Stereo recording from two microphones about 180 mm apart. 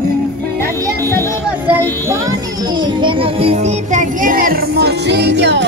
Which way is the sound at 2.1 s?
20° right (ahead or behind).